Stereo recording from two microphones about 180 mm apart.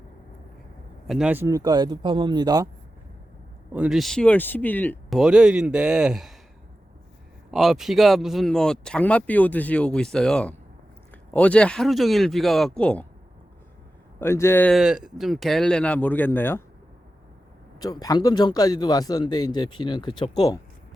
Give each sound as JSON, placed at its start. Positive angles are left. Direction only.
{"t": 1.0, "sound": "speech", "side_deg": -5}
{"t": 3.7, "sound": "speech", "side_deg": -5}
{"t": 7.5, "sound": "speech", "side_deg": 0}
{"t": 14.2, "sound": "speech", "side_deg": 15}
{"t": 14.8, "sound": "speech", "side_deg": -5}
{"t": 17.7, "sound": "speech", "side_deg": 20}